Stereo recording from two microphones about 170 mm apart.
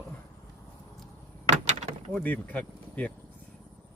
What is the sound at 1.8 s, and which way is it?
Speech, 5° left (ahead or behind).